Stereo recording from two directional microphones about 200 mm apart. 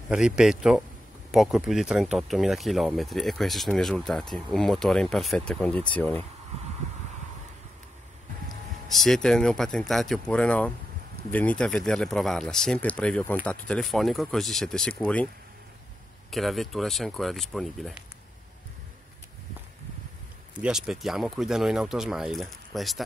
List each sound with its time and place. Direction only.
0.1 s speech: 5° right (ahead or behind)
8.8 s speech: centre (ahead or behind)
16.3 s speech: centre (ahead or behind)
20.5 s speech: 5° right (ahead or behind)